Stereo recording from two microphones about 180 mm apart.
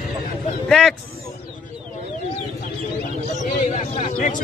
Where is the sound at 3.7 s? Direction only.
40° left (ahead or behind).